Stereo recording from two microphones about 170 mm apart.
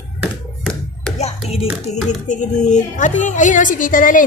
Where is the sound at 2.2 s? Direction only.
45° left (ahead or behind).